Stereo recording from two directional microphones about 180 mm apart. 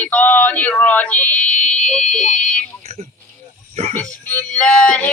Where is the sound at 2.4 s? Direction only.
5° left (ahead or behind).